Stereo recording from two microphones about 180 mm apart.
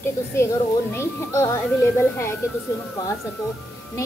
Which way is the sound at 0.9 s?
15° left (ahead or behind).